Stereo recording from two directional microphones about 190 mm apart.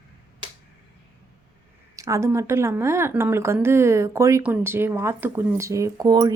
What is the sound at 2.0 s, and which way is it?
Speech, 15° right (ahead or behind).